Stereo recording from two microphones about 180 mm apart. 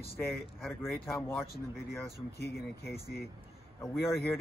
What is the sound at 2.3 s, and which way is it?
Speech, 65° left (ahead or behind).